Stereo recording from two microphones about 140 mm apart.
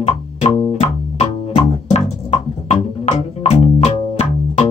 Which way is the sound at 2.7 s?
50° left (ahead or behind).